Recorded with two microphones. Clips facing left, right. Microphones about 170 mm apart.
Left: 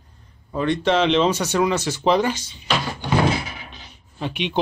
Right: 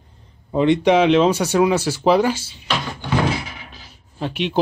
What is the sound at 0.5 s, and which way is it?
Speech, 20° right (ahead or behind).